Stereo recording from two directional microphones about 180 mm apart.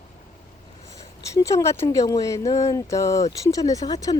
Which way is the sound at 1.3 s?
15° left (ahead or behind).